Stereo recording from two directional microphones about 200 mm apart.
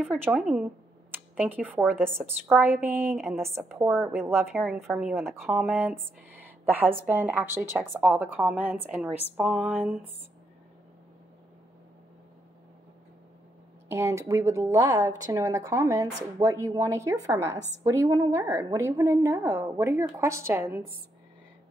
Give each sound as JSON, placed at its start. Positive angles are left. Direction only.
{"t": 0.2, "sound": "a woman's voice", "side_deg": -5}
{"t": 4.6, "sound": "a woman's voice", "side_deg": 0}
{"t": 5.1, "sound": "a woman's voice", "side_deg": -10}
{"t": 13.8, "sound": "a woman's voice", "side_deg": -15}